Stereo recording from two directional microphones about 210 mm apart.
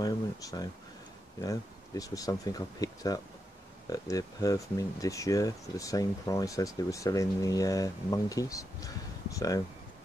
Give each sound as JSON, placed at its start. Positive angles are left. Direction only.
{"t": 0.0, "sound": "speech", "side_deg": 15}